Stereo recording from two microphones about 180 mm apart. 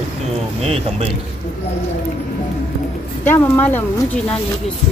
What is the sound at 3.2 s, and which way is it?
Speech, 10° left (ahead or behind).